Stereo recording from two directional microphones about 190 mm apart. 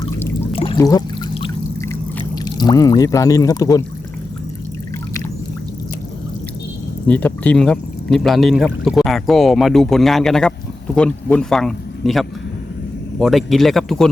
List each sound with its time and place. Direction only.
0.5 s pour: 30° left (ahead or behind)
7.1 s speech: 10° left (ahead or behind)